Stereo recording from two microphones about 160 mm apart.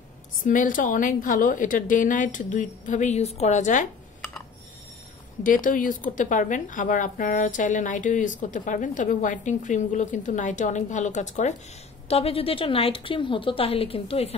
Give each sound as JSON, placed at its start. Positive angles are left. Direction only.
{"t": 0.5, "sound": "a woman's voice", "side_deg": 55}
{"t": 5.4, "sound": "a woman's voice", "side_deg": 55}
{"t": 12.1, "sound": "a woman's voice", "side_deg": 35}